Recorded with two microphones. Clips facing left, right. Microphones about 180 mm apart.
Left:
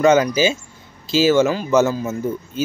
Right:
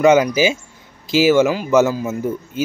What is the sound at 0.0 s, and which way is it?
Speech, 15° right (ahead or behind).